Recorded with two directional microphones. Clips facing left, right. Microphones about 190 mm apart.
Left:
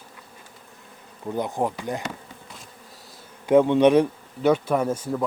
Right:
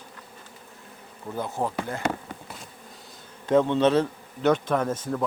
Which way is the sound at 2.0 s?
50° right (ahead or behind).